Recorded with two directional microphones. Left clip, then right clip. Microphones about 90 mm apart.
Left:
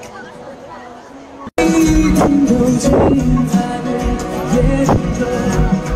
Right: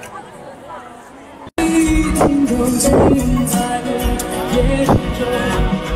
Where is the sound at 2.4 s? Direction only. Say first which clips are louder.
Left 2 dB; 30° left (ahead or behind).